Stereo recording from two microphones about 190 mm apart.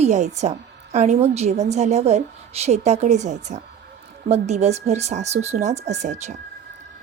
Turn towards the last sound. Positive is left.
turn(degrees=-35)  # may be behind; listen again after turning